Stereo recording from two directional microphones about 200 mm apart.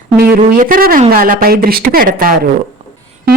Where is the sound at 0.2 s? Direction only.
45° right (ahead or behind).